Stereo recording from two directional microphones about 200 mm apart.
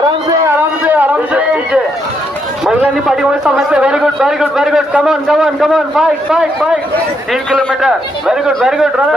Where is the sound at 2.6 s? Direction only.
Centre (ahead or behind).